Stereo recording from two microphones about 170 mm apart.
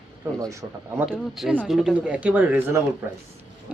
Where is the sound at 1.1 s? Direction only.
Centre (ahead or behind).